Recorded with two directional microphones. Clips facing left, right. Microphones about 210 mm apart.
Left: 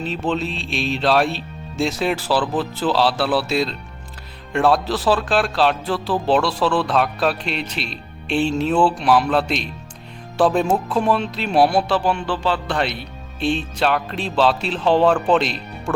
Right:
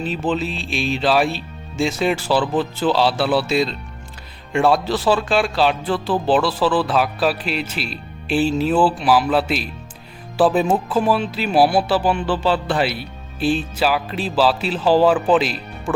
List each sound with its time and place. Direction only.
0.0 s speech: centre (ahead or behind)